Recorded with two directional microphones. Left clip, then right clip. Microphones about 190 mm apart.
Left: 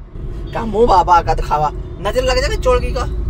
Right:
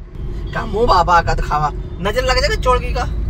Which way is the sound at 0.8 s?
40° left (ahead or behind).